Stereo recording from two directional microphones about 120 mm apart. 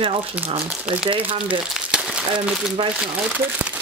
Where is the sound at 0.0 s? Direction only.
50° right (ahead or behind).